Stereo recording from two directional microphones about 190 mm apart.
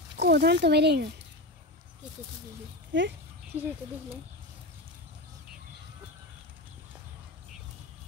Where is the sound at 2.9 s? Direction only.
70° right (ahead or behind).